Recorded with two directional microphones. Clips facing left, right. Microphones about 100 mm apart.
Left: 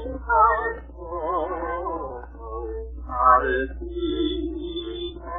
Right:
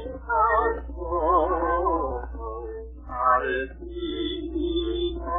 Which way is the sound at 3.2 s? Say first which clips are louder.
Left 4 dB; 30° left (ahead or behind).